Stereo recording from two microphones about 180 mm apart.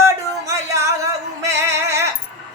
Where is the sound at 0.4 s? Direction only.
15° right (ahead or behind).